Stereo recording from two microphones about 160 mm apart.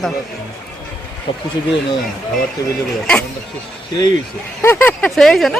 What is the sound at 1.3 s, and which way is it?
Speech, 35° left (ahead or behind).